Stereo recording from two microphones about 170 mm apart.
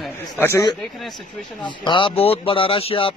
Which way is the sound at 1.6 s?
30° left (ahead or behind).